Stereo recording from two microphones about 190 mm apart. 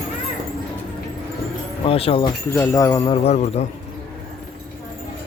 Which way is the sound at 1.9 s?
30° left (ahead or behind).